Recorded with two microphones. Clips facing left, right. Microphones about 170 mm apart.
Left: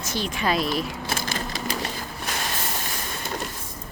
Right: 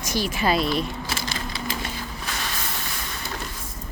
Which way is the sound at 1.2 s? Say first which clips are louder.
Left 1 dB; 45° left (ahead or behind).